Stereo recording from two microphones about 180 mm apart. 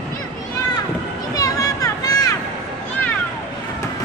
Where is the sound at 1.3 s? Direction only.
20° left (ahead or behind).